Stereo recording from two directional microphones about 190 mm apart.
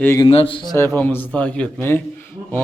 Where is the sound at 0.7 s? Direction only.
15° left (ahead or behind).